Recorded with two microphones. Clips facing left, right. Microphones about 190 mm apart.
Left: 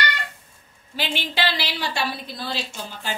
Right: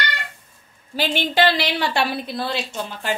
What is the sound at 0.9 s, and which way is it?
A woman's voice, 45° right (ahead or behind).